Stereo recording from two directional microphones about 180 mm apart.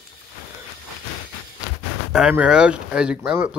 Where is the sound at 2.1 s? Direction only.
5° right (ahead or behind).